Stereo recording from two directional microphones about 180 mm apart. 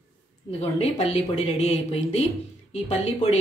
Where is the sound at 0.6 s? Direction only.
35° left (ahead or behind).